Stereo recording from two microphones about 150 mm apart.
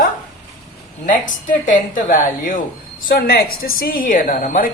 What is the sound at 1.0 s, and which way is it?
Speech, 60° left (ahead or behind).